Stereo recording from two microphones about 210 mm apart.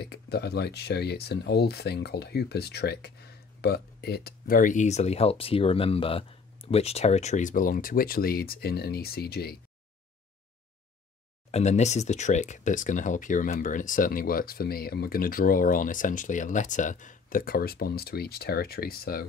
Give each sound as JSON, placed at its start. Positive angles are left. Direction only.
{"t": 0.0, "sound": "speech", "side_deg": 50}
{"t": 11.5, "sound": "speech", "side_deg": 35}